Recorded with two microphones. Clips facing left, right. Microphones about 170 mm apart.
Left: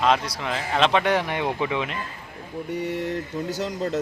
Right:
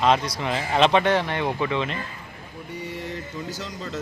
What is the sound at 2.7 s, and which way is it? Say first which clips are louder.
Speech: left 6 dB; 65° left (ahead or behind).